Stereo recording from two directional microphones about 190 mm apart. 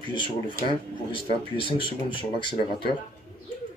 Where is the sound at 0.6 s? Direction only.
25° left (ahead or behind).